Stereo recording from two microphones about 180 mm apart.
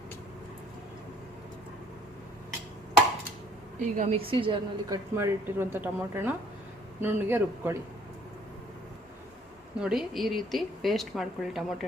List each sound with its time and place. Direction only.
3.8 s a woman's voice: 40° right (ahead or behind)
4.3 s a woman's voice: 30° right (ahead or behind)
5.1 s speech: 15° right (ahead or behind)
9.8 s speech: centre (ahead or behind)